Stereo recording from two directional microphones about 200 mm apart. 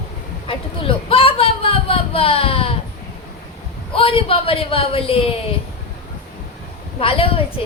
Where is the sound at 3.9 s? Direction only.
25° left (ahead or behind).